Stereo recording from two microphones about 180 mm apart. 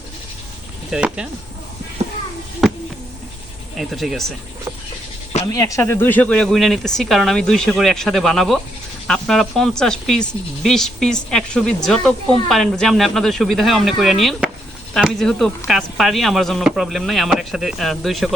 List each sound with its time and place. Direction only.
0.9 s speech: 5° right (ahead or behind)
3.8 s speech: centre (ahead or behind)
5.5 s speech: 15° left (ahead or behind); by 18.3 s centre (ahead or behind)